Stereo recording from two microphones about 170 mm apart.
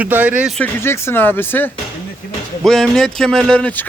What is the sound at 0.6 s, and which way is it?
Speech, 15° left (ahead or behind).